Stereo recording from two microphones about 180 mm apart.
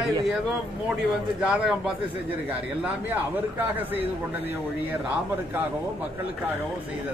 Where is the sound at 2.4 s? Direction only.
10° right (ahead or behind).